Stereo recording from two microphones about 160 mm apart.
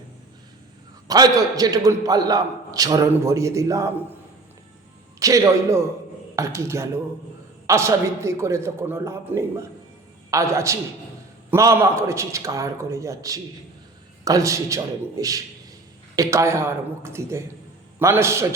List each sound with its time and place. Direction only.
1.0 s a man's voice: 25° right (ahead or behind)
5.2 s a man's voice: 20° right (ahead or behind)